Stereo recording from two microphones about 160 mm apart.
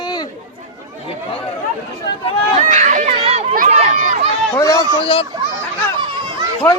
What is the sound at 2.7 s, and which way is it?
Speech, 50° right (ahead or behind).